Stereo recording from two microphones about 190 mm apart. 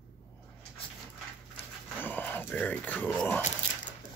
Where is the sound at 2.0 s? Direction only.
10° left (ahead or behind).